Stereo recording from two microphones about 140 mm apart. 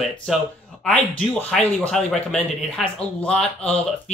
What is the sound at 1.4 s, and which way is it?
Speech, 5° left (ahead or behind).